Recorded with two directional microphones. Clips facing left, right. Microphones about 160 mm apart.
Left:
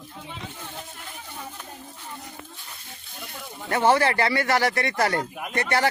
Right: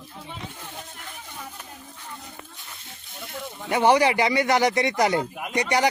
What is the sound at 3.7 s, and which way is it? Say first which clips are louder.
Speech: right 2 dB; 15° right (ahead or behind).